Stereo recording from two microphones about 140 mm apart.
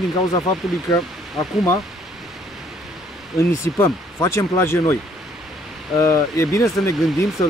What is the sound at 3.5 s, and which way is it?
Speech, 20° left (ahead or behind).